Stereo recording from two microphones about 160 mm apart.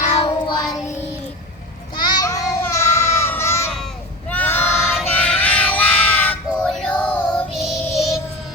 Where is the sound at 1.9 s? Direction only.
25° left (ahead or behind).